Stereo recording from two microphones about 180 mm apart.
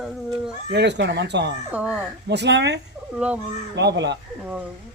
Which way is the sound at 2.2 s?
70° right (ahead or behind).